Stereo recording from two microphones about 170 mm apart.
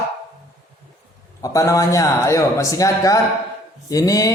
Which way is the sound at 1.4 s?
20° left (ahead or behind).